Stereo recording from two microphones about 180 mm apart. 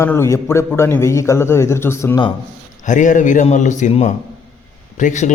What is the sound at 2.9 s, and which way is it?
A man's voice, 45° left (ahead or behind).